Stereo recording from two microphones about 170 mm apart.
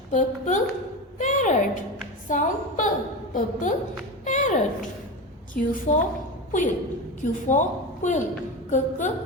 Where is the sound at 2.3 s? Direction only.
50° left (ahead or behind).